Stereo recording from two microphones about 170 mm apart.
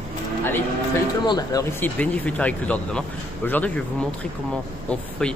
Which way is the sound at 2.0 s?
10° left (ahead or behind).